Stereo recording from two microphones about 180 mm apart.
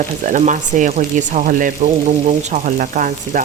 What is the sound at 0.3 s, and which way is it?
Frying, 45° right (ahead or behind).